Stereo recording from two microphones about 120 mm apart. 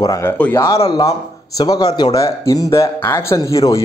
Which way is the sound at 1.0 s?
30° left (ahead or behind).